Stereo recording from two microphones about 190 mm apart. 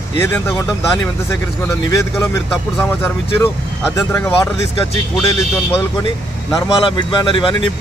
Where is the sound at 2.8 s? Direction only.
10° left (ahead or behind).